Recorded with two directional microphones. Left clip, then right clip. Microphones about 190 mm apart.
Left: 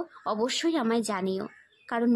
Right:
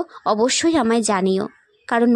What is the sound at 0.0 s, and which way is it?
A woman's voice, 35° right (ahead or behind).